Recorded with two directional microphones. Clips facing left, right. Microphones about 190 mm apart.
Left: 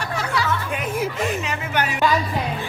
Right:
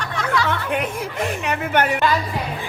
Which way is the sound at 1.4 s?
55° right (ahead or behind).